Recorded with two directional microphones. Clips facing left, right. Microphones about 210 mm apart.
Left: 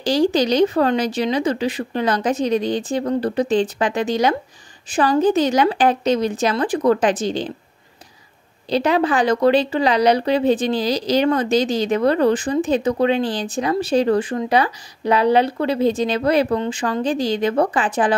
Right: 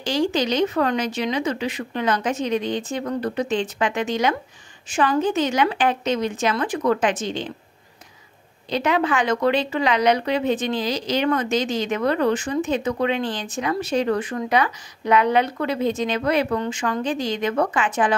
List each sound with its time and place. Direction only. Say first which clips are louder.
0.0 s a woman's voice: left 5 dB; 35° left (ahead or behind)
8.6 s a woman's voice: left 4 dB; 35° left (ahead or behind)